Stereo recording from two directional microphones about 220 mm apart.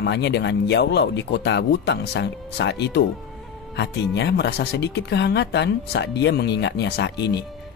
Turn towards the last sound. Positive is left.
turn(degrees=50)  # may be behind; listen again after turning